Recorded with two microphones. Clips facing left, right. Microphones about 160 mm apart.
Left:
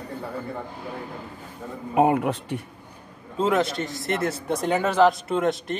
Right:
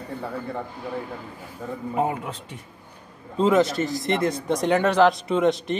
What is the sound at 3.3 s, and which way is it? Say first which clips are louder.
Speech: right 3 dB; centre (ahead or behind).